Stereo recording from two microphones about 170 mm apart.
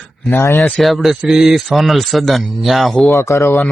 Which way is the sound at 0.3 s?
15° left (ahead or behind).